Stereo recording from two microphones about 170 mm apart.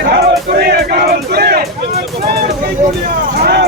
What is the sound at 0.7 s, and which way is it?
Battle cry, 70° right (ahead or behind).